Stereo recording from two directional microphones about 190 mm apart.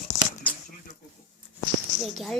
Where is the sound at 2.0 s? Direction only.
Centre (ahead or behind).